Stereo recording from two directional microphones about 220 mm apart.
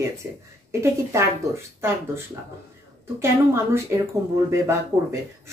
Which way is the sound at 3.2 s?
10° right (ahead or behind).